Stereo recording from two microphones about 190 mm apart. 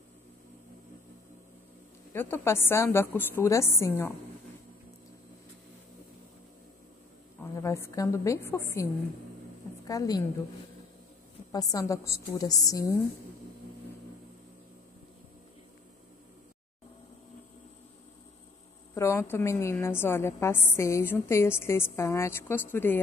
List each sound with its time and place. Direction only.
2.1 s a woman's voice: 10° left (ahead or behind)
7.5 s a woman's voice: 15° left (ahead or behind)
9.8 s a woman's voice: 20° left (ahead or behind)
11.5 s a woman's voice: 20° left (ahead or behind)
18.9 s a woman's voice: 15° left (ahead or behind)